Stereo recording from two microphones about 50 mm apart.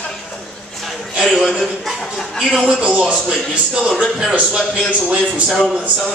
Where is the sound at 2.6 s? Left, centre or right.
Right.